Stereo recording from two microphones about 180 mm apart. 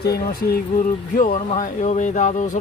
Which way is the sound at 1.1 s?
45° left (ahead or behind).